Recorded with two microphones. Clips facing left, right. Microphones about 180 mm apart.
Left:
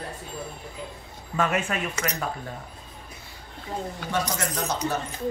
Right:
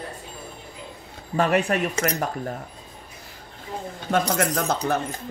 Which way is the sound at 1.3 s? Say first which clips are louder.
Right 5 dB; 35° right (ahead or behind).